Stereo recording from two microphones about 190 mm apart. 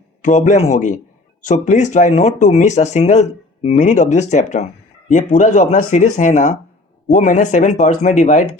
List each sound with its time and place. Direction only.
0.2 s speech: 40° left (ahead or behind)